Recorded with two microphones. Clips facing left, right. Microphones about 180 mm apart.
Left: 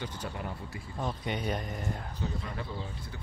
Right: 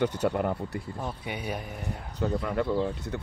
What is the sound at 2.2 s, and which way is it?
Speech, 70° right (ahead or behind).